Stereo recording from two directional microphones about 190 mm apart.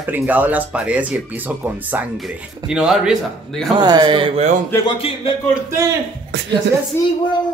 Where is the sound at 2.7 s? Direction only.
5° right (ahead or behind).